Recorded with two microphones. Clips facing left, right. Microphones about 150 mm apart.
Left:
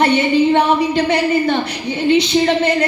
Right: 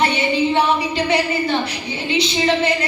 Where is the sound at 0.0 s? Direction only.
55° left (ahead or behind).